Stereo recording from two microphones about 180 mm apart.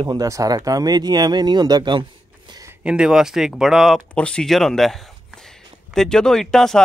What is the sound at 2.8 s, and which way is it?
Speech, 5° right (ahead or behind).